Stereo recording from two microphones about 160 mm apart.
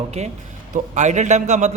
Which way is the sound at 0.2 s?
45° right (ahead or behind).